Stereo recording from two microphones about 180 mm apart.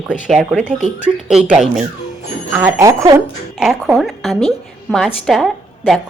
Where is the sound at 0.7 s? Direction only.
40° right (ahead or behind).